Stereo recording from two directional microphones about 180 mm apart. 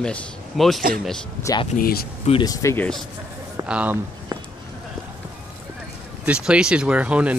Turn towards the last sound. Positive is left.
turn(degrees=-5)  # may be behind; listen again after turning